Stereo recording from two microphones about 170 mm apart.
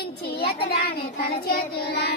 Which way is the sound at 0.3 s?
65° left (ahead or behind).